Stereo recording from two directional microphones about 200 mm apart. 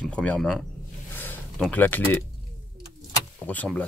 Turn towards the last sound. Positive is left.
turn(degrees=10)  # may be behind; listen again after turning